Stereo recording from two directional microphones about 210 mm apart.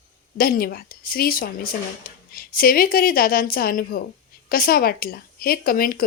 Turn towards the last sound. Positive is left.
turn(degrees=45)  # may be behind; listen again after turning